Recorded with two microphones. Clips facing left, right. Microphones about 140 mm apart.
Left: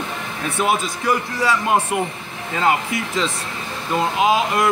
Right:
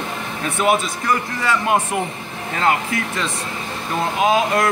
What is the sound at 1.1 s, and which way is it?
Speech, 10° left (ahead or behind).